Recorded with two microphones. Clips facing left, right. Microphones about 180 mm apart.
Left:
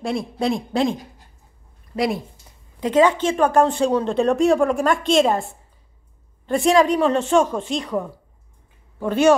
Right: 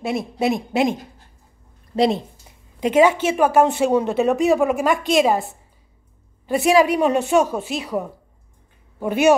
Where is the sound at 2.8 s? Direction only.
10° right (ahead or behind).